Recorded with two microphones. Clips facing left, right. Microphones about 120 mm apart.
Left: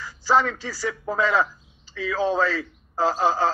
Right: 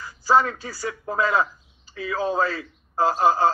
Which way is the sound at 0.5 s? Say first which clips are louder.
Left 2 dB; 35° right (ahead or behind).